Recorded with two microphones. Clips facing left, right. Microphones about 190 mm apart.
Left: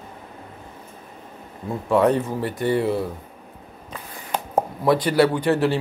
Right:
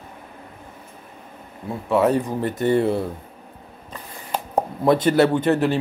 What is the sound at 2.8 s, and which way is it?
Speech, 25° right (ahead or behind).